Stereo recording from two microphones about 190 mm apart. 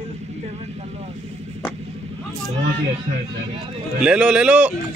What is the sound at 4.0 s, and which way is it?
Speech, 5° right (ahead or behind).